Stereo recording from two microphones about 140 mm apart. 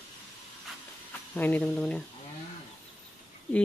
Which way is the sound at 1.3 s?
10° left (ahead or behind).